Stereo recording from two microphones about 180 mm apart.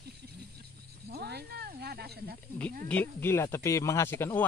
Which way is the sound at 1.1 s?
65° right (ahead or behind).